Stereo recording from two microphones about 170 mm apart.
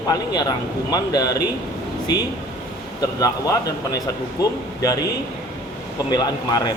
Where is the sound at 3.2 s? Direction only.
20° left (ahead or behind).